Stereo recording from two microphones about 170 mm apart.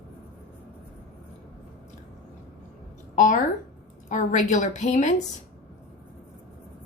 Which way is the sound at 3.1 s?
50° left (ahead or behind).